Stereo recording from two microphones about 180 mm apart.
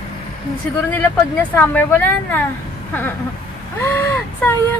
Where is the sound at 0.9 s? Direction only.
10° left (ahead or behind).